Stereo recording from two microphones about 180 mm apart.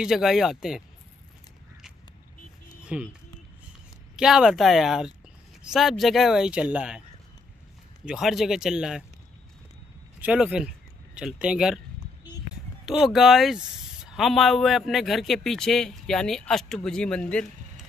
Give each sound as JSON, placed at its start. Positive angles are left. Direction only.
{"t": 0.0, "sound": "speech", "side_deg": -5}
{"t": 2.8, "sound": "music", "side_deg": -5}
{"t": 4.2, "sound": "speech", "side_deg": -5}
{"t": 8.0, "sound": "speech", "side_deg": -5}
{"t": 10.2, "sound": "speech", "side_deg": -5}
{"t": 12.8, "sound": "speech", "side_deg": 0}